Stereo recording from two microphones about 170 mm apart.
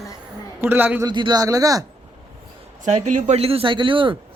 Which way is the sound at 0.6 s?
10° right (ahead or behind).